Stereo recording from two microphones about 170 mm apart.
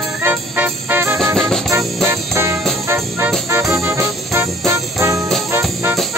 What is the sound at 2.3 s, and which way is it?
Music, 15° right (ahead or behind).